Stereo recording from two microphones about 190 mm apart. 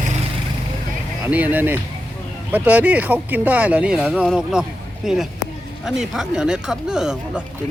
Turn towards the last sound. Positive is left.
turn(degrees=-5)  # may be behind; listen again after turning